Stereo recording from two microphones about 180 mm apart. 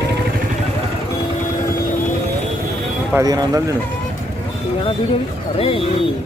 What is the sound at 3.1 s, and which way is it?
Speech, 20° right (ahead or behind).